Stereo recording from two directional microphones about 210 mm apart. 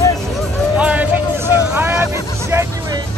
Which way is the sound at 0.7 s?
5° right (ahead or behind).